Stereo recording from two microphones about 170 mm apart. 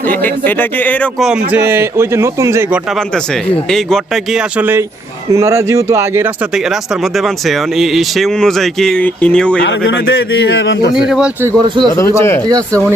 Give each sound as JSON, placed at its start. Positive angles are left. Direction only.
{"t": 0.1, "sound": "speech", "side_deg": 10}
{"t": 1.2, "sound": "a man's voice", "side_deg": -5}
{"t": 3.7, "sound": "a man's voice", "side_deg": 0}
{"t": 6.7, "sound": "speech", "side_deg": 0}
{"t": 9.6, "sound": "a man's voice", "side_deg": 90}
{"t": 10.9, "sound": "speech", "side_deg": -5}
{"t": 11.4, "sound": "speech", "side_deg": -25}
{"t": 11.9, "sound": "speech", "side_deg": 15}
{"t": 12.5, "sound": "speech", "side_deg": -20}